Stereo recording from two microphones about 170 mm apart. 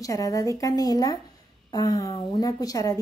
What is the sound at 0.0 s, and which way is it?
A woman's voice, 20° left (ahead or behind).